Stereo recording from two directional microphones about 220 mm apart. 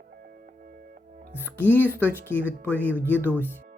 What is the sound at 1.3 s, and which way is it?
Speech, 10° left (ahead or behind).